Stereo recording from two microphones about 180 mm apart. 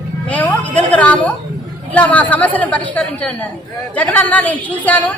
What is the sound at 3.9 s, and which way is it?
A woman's voice, 10° left (ahead or behind).